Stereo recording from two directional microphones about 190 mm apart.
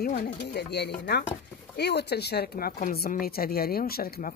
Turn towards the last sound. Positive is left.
turn(degrees=50)  # may be behind; listen again after turning